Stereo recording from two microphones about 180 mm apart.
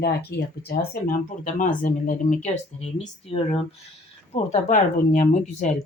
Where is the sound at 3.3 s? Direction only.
30° left (ahead or behind).